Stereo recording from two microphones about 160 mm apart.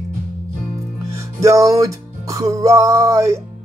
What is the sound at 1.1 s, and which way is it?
Music, 20° right (ahead or behind).